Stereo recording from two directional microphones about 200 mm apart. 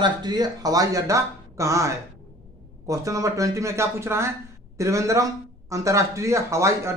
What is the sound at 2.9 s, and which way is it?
A man's voice, 15° right (ahead or behind).